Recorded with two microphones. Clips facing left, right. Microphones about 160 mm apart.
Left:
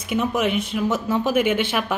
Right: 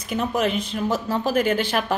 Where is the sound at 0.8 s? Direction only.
35° right (ahead or behind).